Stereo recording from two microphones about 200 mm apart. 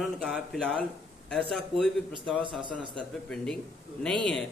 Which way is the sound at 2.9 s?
5° left (ahead or behind).